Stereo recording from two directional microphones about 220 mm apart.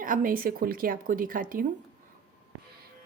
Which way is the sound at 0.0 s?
40° right (ahead or behind).